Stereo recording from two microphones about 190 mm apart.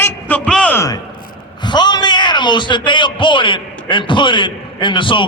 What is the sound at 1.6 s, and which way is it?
A man's voice, 25° left (ahead or behind).